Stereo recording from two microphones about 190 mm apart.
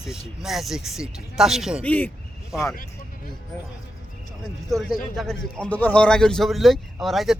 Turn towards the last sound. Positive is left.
turn(degrees=0)  # may be behind; listen again after turning